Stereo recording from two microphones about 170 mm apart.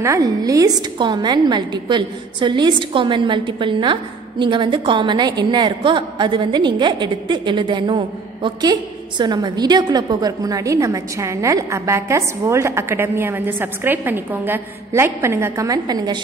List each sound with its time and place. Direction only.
0.0 s a woman's voice: 20° right (ahead or behind)